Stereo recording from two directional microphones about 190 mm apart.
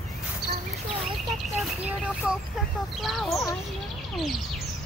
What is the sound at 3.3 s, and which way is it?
Speech, 15° left (ahead or behind).